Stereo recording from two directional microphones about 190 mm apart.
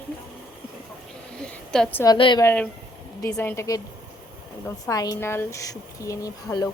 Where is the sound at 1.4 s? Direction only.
5° left (ahead or behind).